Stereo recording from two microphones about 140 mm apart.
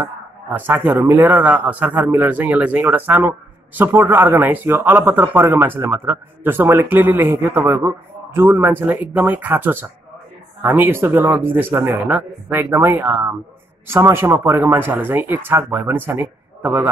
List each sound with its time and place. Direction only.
0.0 s a man's voice: 15° right (ahead or behind)